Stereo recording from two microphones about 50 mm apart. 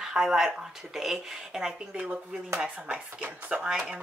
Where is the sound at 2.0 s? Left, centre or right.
Right.